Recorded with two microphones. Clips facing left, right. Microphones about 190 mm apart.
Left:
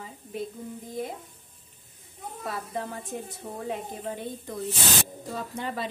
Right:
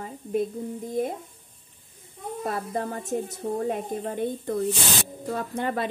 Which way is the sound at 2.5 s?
45° right (ahead or behind).